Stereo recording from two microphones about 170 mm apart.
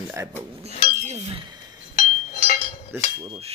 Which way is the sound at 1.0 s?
40° right (ahead or behind).